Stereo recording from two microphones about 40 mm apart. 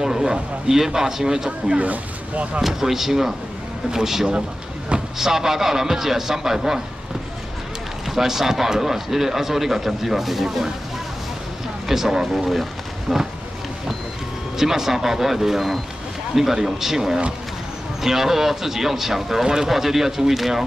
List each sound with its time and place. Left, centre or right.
0.0 s speech: centre
1.8 s speech: right
2.6 s speech: centre
8.1 s speech: centre
11.9 s speech: centre
14.6 s speech: centre